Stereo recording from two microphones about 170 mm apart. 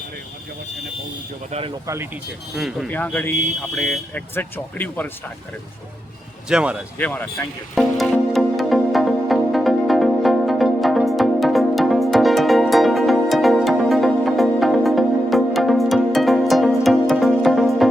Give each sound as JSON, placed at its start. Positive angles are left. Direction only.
{"t": 1.5, "sound": "speech", "side_deg": -35}
{"t": 2.6, "sound": "speech", "side_deg": 0}
{"t": 4.4, "sound": "speech", "side_deg": 10}
{"t": 6.5, "sound": "speech", "side_deg": -5}
{"t": 7.0, "sound": "speech", "side_deg": 10}
{"t": 7.8, "sound": "music", "side_deg": 0}